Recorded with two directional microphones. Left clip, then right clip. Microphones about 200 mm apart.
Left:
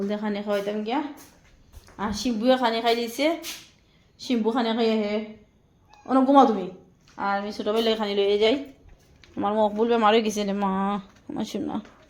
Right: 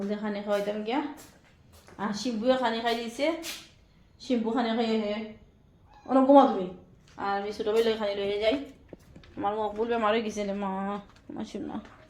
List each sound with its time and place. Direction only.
0.1 s speech: 35° left (ahead or behind)
2.0 s a woman's voice: 40° left (ahead or behind)